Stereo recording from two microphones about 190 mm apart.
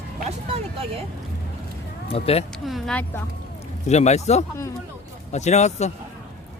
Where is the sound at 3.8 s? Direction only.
35° left (ahead or behind).